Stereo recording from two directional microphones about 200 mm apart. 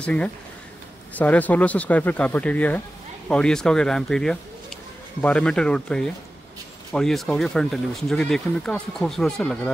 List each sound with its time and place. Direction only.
0.0 s speech: 5° left (ahead or behind)